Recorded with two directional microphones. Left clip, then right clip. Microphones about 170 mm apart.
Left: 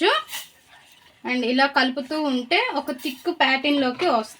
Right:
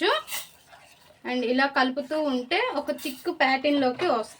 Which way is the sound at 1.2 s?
45° left (ahead or behind).